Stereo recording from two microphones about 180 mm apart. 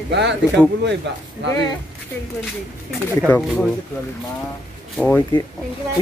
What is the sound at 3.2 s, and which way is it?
Speech, centre (ahead or behind).